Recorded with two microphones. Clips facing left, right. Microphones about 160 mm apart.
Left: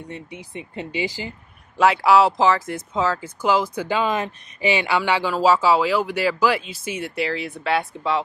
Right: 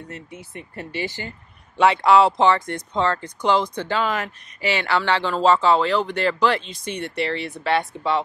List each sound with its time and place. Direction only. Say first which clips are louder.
0.3 s speech: left 2 dB; 15° left (ahead or behind)
1.8 s speech: even; 5° left (ahead or behind)